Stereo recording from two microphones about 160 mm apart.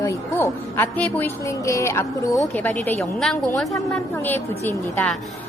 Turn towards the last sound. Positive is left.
turn(degrees=10)  # may be behind; listen again after turning